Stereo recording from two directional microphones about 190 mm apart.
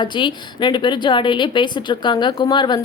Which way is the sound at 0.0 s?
25° left (ahead or behind).